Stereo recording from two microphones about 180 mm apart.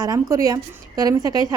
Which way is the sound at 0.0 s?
20° right (ahead or behind).